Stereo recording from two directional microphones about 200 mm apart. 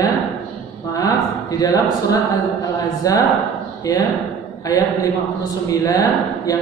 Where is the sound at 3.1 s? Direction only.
15° left (ahead or behind).